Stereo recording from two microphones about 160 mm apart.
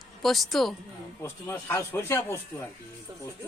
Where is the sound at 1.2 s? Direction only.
15° left (ahead or behind).